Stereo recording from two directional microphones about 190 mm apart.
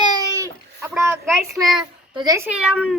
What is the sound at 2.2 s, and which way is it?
Speech, 15° right (ahead or behind).